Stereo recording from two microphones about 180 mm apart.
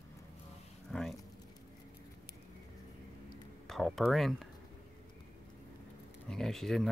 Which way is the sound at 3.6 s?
Centre (ahead or behind).